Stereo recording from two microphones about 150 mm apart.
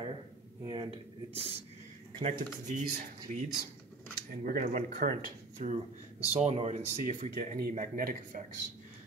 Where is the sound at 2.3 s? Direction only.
65° right (ahead or behind).